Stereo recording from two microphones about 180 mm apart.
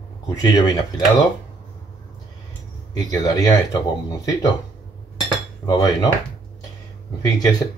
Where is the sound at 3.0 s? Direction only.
20° left (ahead or behind).